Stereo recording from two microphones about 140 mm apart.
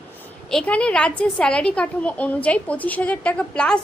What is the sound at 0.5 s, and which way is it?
A woman's voice, 10° left (ahead or behind).